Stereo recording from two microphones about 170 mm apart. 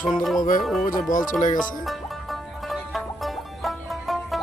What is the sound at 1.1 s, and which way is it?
Speech, 50° left (ahead or behind).